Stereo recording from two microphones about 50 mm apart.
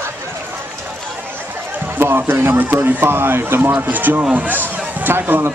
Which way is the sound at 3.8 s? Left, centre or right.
Right.